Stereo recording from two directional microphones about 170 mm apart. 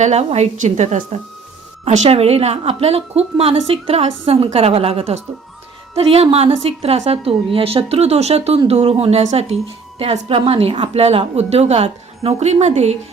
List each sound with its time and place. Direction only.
0.0 s a woman's voice: 40° right (ahead or behind)